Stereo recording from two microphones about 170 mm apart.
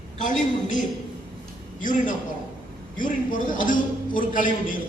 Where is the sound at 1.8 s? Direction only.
50° left (ahead or behind).